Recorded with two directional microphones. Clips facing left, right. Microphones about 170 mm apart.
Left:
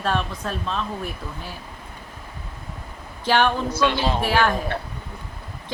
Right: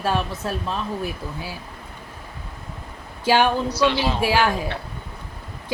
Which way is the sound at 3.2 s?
10° right (ahead or behind).